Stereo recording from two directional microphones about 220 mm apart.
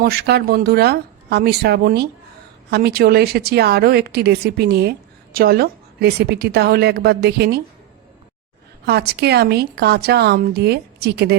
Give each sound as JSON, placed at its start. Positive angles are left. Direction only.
{"t": 0.0, "sound": "a woman's voice", "side_deg": -45}
{"t": 8.9, "sound": "a woman's voice", "side_deg": -45}